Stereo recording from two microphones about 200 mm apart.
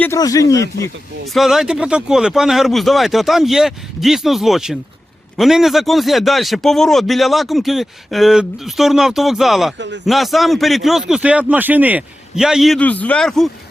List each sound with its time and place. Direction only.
0.0 s speech: 15° left (ahead or behind)
1.3 s speech: centre (ahead or behind)
9.7 s speech: 60° right (ahead or behind)
10.1 s speech: centre (ahead or behind)